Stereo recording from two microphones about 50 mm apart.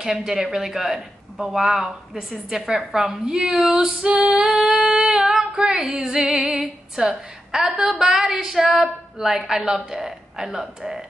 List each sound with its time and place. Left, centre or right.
0.0 s speech: centre
3.3 s a woman's voice: right
3.7 s speech: centre
4.4 s female singing: centre
5.6 s speech: centre
6.4 s a sound: centre
7.6 s a woman's voice: right
8.2 s speech: centre